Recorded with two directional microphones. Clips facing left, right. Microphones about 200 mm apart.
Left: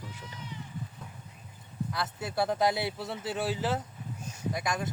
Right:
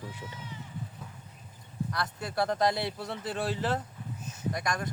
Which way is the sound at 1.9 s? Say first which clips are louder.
Left 1 dB; 5° left (ahead or behind).